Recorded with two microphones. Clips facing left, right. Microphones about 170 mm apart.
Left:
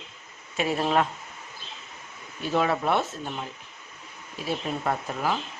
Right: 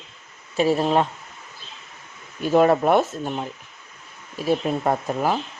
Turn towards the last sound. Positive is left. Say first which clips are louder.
# right 5 dB
turn(degrees=-40)  # may be behind; listen again after turning